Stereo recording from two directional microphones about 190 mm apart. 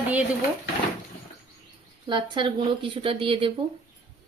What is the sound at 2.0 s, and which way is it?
Speech, 25° right (ahead or behind).